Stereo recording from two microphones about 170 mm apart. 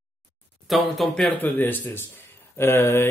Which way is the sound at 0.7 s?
Centre (ahead or behind).